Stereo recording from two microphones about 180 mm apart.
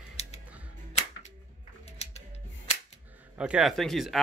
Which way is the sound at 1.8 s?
35° left (ahead or behind).